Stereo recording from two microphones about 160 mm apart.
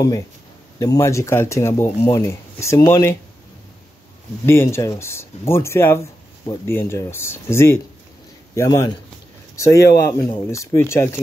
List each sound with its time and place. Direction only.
0.7 s speech: 20° left (ahead or behind)
4.5 s a man's voice: 15° left (ahead or behind)